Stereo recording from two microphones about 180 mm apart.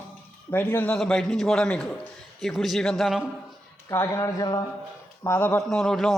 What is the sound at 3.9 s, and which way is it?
Speech, 15° left (ahead or behind).